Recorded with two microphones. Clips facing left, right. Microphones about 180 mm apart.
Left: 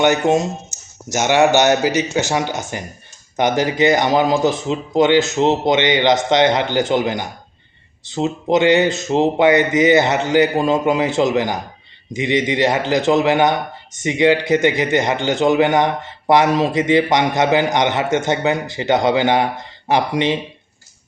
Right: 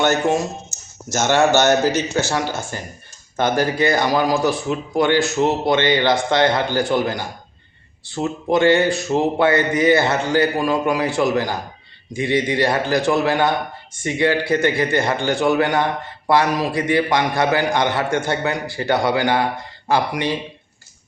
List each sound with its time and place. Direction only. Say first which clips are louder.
0.0 s speech: left 3 dB; 20° left (ahead or behind)